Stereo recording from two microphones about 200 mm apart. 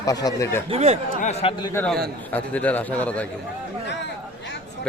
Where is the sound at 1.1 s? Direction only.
35° left (ahead or behind).